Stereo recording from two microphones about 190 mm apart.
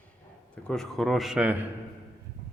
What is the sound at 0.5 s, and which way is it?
Speech, 5° left (ahead or behind).